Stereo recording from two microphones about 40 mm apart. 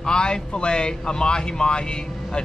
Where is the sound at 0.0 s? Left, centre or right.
Left.